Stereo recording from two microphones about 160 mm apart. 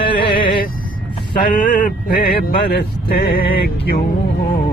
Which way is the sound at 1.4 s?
60° left (ahead or behind).